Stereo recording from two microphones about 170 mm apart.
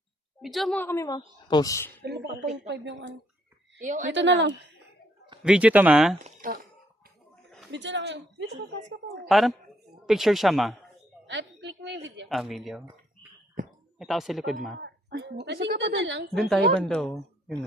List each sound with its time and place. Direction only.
0.4 s a woman's voice: centre (ahead or behind); by 1.9 s 20° left (ahead or behind)
2.0 s speech: 80° right
3.8 s a woman's voice: 45° right (ahead or behind)
4.1 s speech: 90° right
5.4 s speech: 5° right (ahead or behind)
6.2 s a sound: 55° right (ahead or behind)
7.7 s speech: 90° right
9.3 s speech: centre (ahead or behind)
11.3 s a sound: 90° right
12.0 s speech: 90° right
12.3 s speech: centre (ahead or behind)
14.0 s speech: centre (ahead or behind)
14.8 s speech: 80° right
16.4 s speech: centre (ahead or behind)